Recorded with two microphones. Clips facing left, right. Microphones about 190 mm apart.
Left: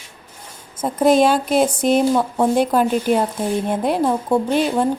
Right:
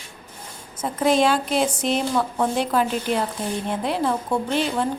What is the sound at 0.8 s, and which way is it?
A woman's voice, 45° left (ahead or behind).